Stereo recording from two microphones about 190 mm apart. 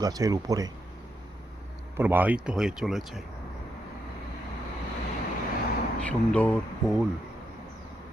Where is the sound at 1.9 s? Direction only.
10° right (ahead or behind).